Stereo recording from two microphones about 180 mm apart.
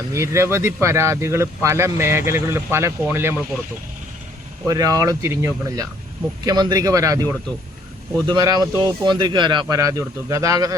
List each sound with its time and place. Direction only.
0.1 s speech: 15° right (ahead or behind)
4.6 s speech: 20° right (ahead or behind)
8.3 s speech: 25° right (ahead or behind)